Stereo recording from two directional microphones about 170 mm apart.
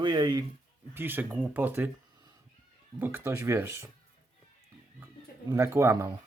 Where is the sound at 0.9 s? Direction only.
10° right (ahead or behind).